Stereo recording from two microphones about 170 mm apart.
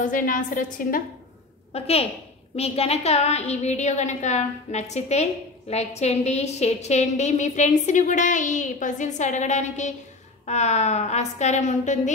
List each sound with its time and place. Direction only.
0.0 s a woman's voice: 50° left (ahead or behind)
1.7 s a woman's voice: 35° left (ahead or behind)